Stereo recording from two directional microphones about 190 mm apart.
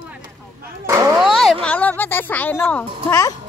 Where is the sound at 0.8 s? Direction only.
15° right (ahead or behind).